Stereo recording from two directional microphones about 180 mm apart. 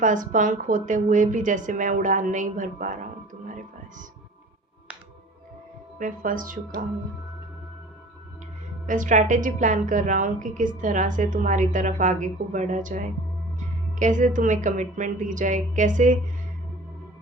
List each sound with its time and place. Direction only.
0.0 s a woman's voice: 45° right (ahead or behind)
6.0 s a woman's voice: 50° right (ahead or behind)
8.9 s a woman's voice: 45° right (ahead or behind)